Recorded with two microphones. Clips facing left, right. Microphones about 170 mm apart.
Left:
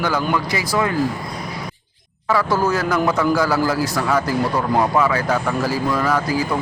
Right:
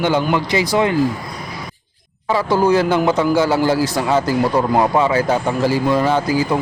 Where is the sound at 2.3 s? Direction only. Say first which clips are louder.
Right 4 dB; 25° right (ahead or behind).